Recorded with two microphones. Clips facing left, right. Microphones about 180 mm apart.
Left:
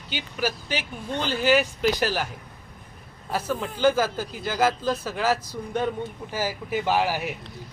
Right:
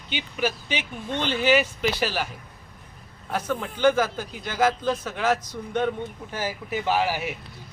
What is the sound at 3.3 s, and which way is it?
Speech, 5° left (ahead or behind).